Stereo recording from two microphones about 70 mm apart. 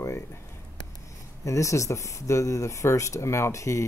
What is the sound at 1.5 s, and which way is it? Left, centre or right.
Speech, left.